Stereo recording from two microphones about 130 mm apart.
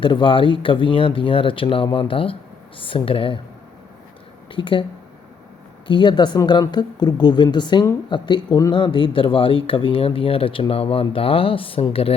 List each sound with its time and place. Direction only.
0.0 s speech: 40° left (ahead or behind)
4.5 s speech: 40° left (ahead or behind)
5.9 s speech: 35° left (ahead or behind)